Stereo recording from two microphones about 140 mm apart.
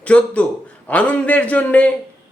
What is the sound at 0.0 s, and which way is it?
A man's voice, 10° left (ahead or behind).